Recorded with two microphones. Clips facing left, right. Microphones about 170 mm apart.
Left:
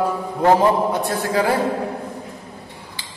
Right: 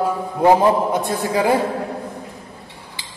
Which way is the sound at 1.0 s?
15° right (ahead or behind).